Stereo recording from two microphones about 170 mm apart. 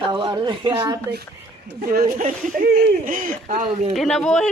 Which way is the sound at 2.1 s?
50° right (ahead or behind).